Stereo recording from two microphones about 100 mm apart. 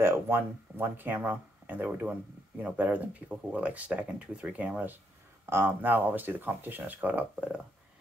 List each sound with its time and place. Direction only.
0.0 s speech: 20° right (ahead or behind)